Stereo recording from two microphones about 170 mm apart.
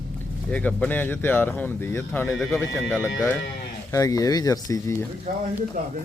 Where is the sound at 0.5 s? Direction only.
10° left (ahead or behind).